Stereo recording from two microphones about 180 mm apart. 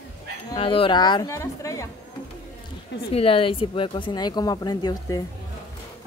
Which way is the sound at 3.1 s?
30° left (ahead or behind).